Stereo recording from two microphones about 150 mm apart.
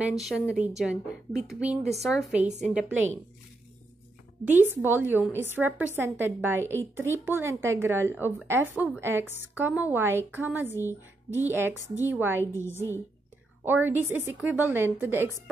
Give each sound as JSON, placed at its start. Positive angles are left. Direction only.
{"t": 0.0, "sound": "a woman's voice", "side_deg": 0}
{"t": 4.8, "sound": "a woman's voice", "side_deg": -15}
{"t": 12.5, "sound": "a woman's voice", "side_deg": 15}
{"t": 13.7, "sound": "a woman's voice", "side_deg": -15}